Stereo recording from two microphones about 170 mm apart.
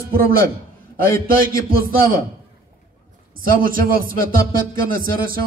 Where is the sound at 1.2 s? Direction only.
60° right (ahead or behind).